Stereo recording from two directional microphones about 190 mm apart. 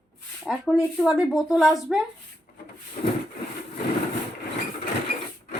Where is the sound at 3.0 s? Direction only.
40° left (ahead or behind).